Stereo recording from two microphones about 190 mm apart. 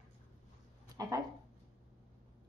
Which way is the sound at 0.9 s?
20° right (ahead or behind).